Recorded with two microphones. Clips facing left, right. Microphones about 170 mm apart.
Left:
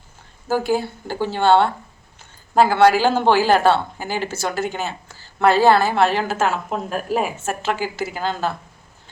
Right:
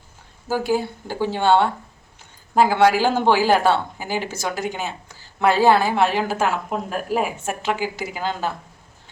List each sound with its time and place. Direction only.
0.4 s speech: 10° right (ahead or behind)